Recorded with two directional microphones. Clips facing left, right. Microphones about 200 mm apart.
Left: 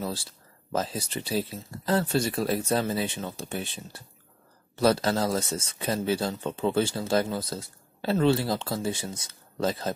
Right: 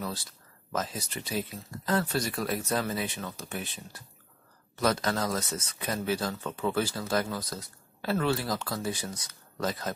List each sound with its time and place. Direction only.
0.0 s speech: 30° left (ahead or behind)